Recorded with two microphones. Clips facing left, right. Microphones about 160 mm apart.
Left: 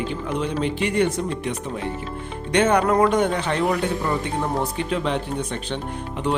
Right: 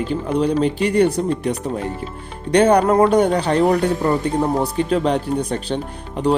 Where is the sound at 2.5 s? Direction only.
35° right (ahead or behind).